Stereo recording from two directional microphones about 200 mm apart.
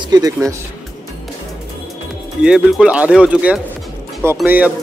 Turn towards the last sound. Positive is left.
turn(degrees=-5)  # may be behind; listen again after turning